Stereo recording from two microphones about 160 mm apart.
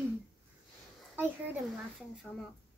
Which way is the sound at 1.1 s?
10° right (ahead or behind).